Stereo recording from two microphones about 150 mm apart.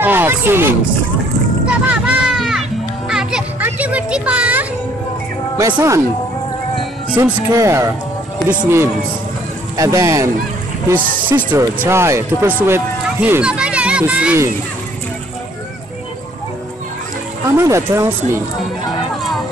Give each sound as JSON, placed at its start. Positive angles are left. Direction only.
{"t": 0.0, "sound": "speech", "side_deg": -15}
{"t": 1.7, "sound": "music", "side_deg": -10}
{"t": 5.8, "sound": "speech", "side_deg": -20}
{"t": 7.2, "sound": "speech", "side_deg": -20}
{"t": 11.3, "sound": "speech", "side_deg": -15}
{"t": 17.6, "sound": "speech", "side_deg": -20}